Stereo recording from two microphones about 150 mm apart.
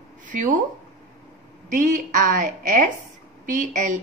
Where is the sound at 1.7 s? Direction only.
60° right (ahead or behind).